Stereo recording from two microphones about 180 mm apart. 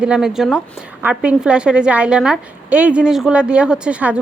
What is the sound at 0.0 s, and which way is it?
A woman's voice, 5° right (ahead or behind).